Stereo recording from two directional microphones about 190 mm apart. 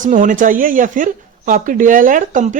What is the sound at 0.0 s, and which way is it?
Speech, 40° right (ahead or behind).